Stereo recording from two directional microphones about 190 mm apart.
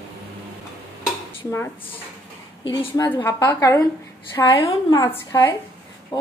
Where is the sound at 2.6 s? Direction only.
20° left (ahead or behind).